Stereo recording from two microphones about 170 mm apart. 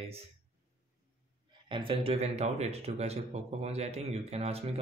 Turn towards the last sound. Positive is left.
turn(degrees=-35)  # may be behind; listen again after turning